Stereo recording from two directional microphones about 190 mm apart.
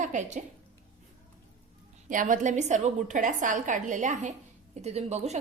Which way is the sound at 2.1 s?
45° right (ahead or behind).